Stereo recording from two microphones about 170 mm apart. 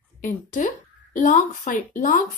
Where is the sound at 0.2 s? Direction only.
50° left (ahead or behind).